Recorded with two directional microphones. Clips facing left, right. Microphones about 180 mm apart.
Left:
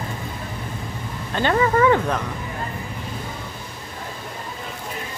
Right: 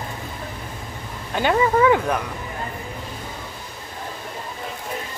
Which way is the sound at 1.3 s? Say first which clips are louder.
Even; 10° right (ahead or behind).